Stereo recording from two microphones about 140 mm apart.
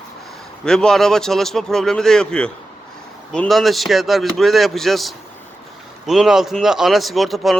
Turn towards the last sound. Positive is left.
turn(degrees=0)  # may be behind; listen again after turning